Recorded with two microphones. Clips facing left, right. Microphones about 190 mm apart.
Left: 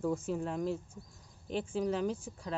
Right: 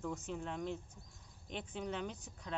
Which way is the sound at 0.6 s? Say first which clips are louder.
Left 7 dB; 35° left (ahead or behind).